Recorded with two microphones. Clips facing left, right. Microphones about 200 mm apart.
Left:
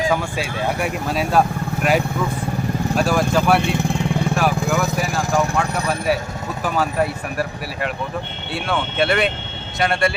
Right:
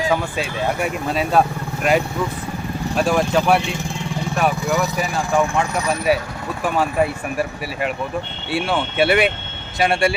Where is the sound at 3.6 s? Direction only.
60° left (ahead or behind).